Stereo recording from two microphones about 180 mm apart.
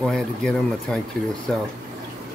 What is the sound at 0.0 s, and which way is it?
Speech, 5° left (ahead or behind).